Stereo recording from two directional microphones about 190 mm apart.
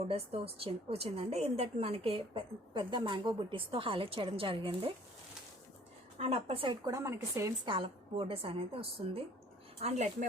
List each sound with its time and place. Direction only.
0.1 s a woman's voice: 30° right (ahead or behind)
6.1 s a woman's voice: 30° right (ahead or behind); by 7.7 s 15° right (ahead or behind)
7.7 s a woman's voice: 25° right (ahead or behind)